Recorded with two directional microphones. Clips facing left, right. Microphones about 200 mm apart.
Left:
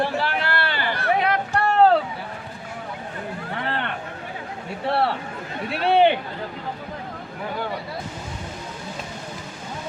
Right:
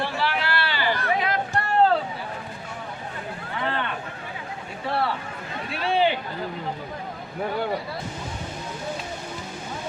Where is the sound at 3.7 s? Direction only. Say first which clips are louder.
Right 1 dB; 60° left (ahead or behind).